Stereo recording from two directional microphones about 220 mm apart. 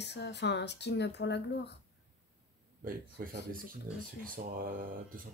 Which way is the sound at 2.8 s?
40° right (ahead or behind).